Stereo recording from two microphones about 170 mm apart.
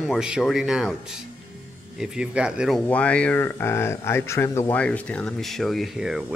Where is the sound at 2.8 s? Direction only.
10° left (ahead or behind).